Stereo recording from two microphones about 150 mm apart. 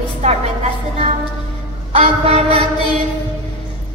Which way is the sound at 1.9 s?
45° right (ahead or behind).